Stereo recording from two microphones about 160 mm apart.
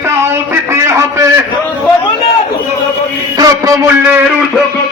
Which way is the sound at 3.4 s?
20° right (ahead or behind).